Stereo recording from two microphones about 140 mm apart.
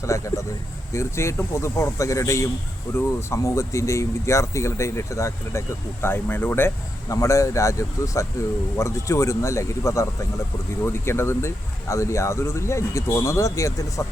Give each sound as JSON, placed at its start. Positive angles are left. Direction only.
{"t": 0.0, "sound": "speech", "side_deg": 20}